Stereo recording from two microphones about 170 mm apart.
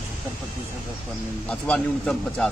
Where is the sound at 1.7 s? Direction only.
5° left (ahead or behind).